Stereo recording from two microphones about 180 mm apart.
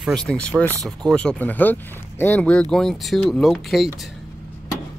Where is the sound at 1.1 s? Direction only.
5° left (ahead or behind).